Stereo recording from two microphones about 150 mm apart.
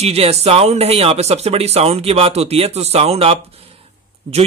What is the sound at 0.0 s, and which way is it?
Speech, 45° right (ahead or behind).